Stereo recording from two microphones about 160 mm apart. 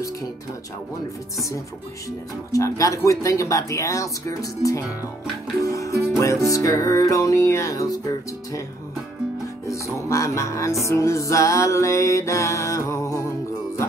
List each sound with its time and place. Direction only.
2.0 s music: 20° left (ahead or behind)
9.7 s music: 20° left (ahead or behind)